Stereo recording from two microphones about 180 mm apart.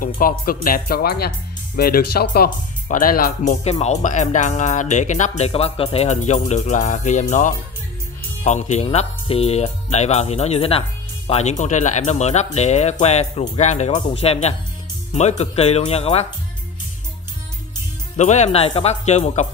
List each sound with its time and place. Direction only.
0.0 s speech: 50° left (ahead or behind)
3.8 s speech: 40° left (ahead or behind)
18.1 s speech: 40° left (ahead or behind)